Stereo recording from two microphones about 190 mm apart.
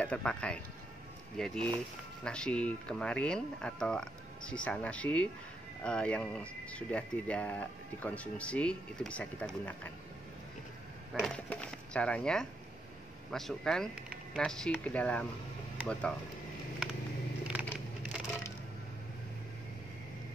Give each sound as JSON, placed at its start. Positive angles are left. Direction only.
{"t": 0.0, "sound": "speech", "side_deg": 5}
{"t": 11.1, "sound": "speech", "side_deg": 5}
{"t": 17.5, "sound": "a sound", "side_deg": -5}